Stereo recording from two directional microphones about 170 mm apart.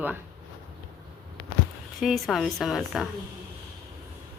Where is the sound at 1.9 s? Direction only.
Centre (ahead or behind).